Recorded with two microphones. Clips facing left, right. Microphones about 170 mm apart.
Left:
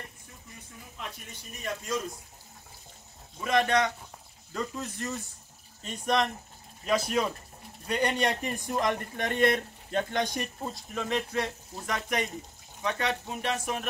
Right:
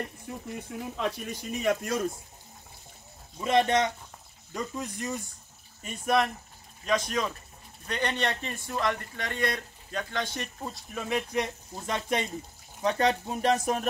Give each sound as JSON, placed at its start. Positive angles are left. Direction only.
{"t": 0.3, "sound": "speech", "side_deg": -70}
{"t": 3.3, "sound": "speech", "side_deg": -25}
{"t": 6.9, "sound": "a man's voice", "side_deg": 10}
{"t": 10.6, "sound": "speech", "side_deg": -5}
{"t": 11.7, "sound": "speech", "side_deg": -25}
{"t": 12.8, "sound": "speech", "side_deg": -35}